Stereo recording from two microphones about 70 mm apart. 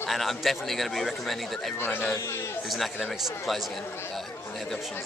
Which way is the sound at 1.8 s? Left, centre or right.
Left.